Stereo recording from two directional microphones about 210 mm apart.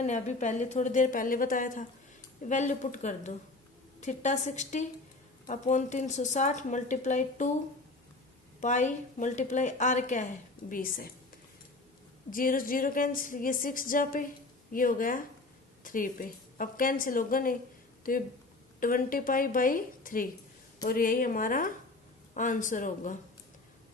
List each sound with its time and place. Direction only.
0.0 s a woman's voice: 35° left (ahead or behind)
8.6 s a woman's voice: 35° left (ahead or behind)
12.3 s a woman's voice: 40° left (ahead or behind)